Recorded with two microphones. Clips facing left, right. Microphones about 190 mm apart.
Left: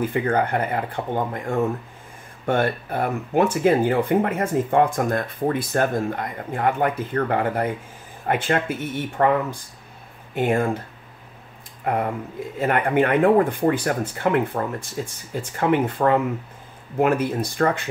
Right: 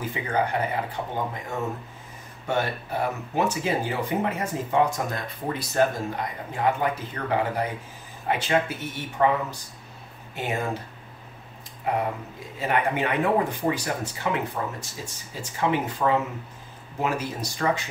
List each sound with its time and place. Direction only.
0.0 s speech: 55° left (ahead or behind)
11.9 s speech: 55° left (ahead or behind)